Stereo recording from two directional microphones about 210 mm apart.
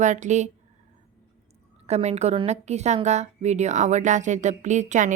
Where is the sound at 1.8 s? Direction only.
30° right (ahead or behind).